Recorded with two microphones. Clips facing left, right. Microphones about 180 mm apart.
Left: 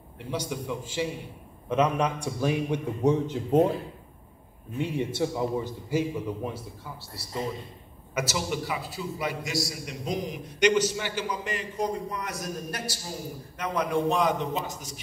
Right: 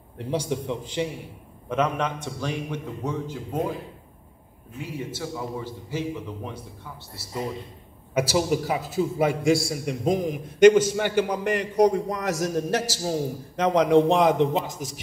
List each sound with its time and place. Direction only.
0.2 s a man's voice: 30° right (ahead or behind)
1.7 s a man's voice: 5° left (ahead or behind)
2.4 s a man's voice: 15° left (ahead or behind)
4.7 s a man's voice: 25° left (ahead or behind); by 6.6 s 10° left (ahead or behind)
8.1 s a man's voice: 30° right (ahead or behind); by 14.9 s 75° right (ahead or behind)